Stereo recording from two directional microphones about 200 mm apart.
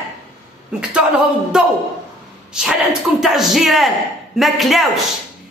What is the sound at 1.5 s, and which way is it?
A man's voice, centre (ahead or behind).